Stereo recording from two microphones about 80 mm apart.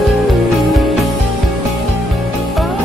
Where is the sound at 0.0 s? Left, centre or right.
Centre.